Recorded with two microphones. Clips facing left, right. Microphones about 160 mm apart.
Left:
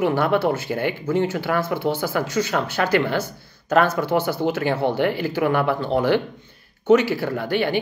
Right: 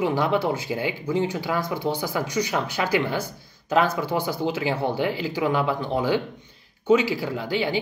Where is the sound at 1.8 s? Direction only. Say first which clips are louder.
Left 3 dB; 15° right (ahead or behind).